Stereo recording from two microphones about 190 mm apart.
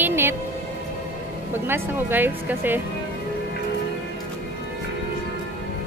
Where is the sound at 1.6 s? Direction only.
10° right (ahead or behind).